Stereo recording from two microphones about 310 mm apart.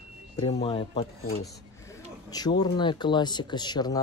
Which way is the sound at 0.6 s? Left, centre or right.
Centre.